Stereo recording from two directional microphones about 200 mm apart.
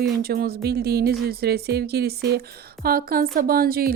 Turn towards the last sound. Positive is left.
turn(degrees=-50)  # may be behind; listen again after turning